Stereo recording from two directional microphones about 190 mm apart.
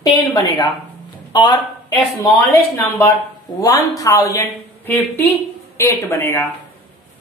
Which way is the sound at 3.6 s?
20° left (ahead or behind).